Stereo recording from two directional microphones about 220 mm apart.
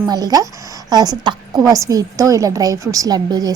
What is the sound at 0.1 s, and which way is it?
A woman's voice, 15° right (ahead or behind).